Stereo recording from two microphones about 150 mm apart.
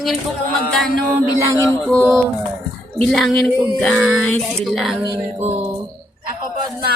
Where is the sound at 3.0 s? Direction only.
5° left (ahead or behind).